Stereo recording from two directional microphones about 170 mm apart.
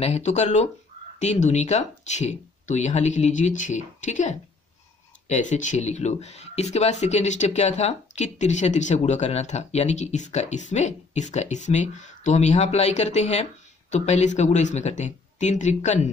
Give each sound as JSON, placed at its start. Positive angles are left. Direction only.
{"t": 0.0, "sound": "speech", "side_deg": 40}